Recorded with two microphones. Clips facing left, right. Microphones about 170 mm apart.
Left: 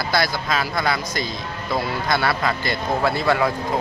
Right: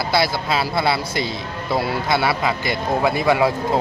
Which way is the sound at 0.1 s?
30° right (ahead or behind).